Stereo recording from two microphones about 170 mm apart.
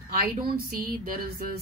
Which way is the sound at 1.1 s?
60° right (ahead or behind).